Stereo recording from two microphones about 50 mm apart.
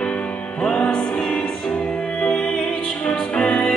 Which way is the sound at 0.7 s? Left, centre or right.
Centre.